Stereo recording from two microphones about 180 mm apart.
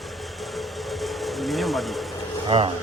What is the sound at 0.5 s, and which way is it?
Vehicle, centre (ahead or behind).